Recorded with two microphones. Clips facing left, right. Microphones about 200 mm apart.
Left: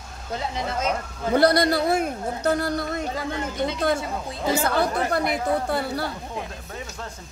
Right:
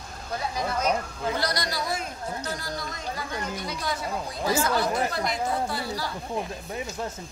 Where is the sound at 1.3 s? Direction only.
55° left (ahead or behind).